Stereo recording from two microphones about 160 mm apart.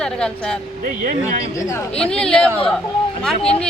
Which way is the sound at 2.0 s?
5° left (ahead or behind).